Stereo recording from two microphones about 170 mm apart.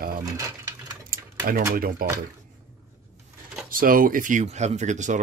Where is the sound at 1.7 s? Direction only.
55° right (ahead or behind).